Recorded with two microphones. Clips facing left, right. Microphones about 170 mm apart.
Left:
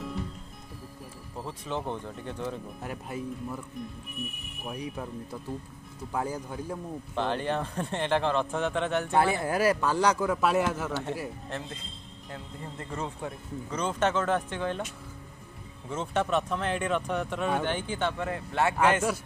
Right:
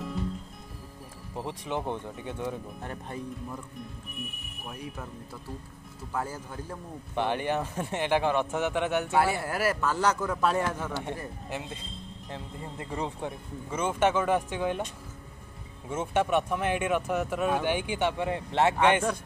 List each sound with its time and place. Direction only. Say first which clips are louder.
1.4 s speech: right 1 dB; 15° right (ahead or behind)
2.8 s speech: left 2 dB; 5° left (ahead or behind)
4.6 s a man's voice: left 4 dB; 15° left (ahead or behind)
7.2 s speech: right 1 dB; 15° right (ahead or behind)
9.1 s a man's voice: left 1 dB; 20° left (ahead or behind)
10.9 s speech: left 2 dB; 10° right (ahead or behind)
15.9 s speech: right 2 dB; 10° right (ahead or behind)